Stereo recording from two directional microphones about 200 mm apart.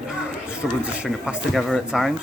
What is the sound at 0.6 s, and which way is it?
Speech, 5° right (ahead or behind).